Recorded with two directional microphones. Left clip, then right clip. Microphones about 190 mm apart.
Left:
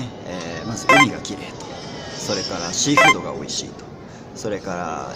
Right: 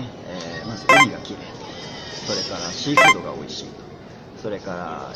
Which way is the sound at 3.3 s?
15° left (ahead or behind).